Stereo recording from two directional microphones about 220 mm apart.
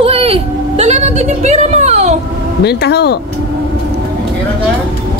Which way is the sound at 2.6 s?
50° left (ahead or behind).